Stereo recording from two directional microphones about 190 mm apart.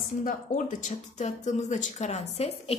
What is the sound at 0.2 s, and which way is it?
A woman's voice, 40° left (ahead or behind).